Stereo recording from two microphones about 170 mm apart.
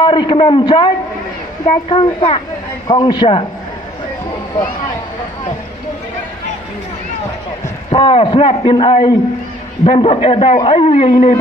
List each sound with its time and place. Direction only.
0.0 s a man's voice: 25° left (ahead or behind)
7.9 s a man's voice: 30° left (ahead or behind)